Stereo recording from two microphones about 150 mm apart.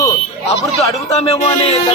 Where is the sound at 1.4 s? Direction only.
40° left (ahead or behind).